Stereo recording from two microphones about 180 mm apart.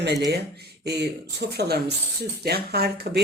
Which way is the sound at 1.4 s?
65° right (ahead or behind).